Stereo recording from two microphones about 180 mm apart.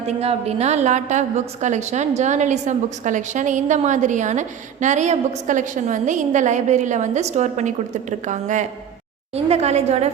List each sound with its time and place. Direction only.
0.2 s a woman's voice: 35° right (ahead or behind)